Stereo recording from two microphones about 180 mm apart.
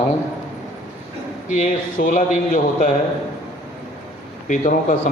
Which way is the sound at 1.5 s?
45° left (ahead or behind).